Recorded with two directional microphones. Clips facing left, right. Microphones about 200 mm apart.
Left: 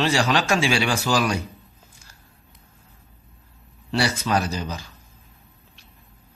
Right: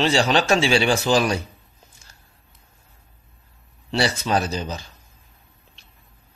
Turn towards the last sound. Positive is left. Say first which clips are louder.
# right 1 dB
turn(degrees=-25)  # may be behind; listen again after turning